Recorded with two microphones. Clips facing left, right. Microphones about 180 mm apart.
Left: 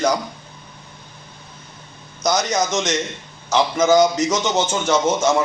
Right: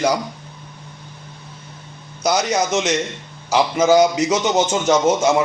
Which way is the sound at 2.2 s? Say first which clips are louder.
Right 1 dB; 10° right (ahead or behind).